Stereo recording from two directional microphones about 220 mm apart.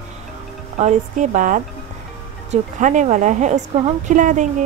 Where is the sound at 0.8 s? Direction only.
35° right (ahead or behind).